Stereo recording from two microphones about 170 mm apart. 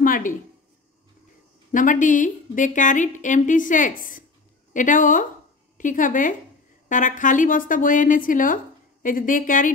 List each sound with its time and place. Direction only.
0.0 s a woman's voice: 55° left (ahead or behind)
1.7 s a woman's voice: 50° left (ahead or behind)